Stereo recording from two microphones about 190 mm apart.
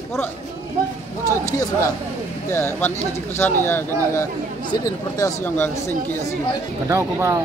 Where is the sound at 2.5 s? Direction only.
15° left (ahead or behind).